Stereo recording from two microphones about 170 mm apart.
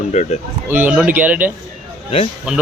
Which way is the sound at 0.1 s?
40° left (ahead or behind).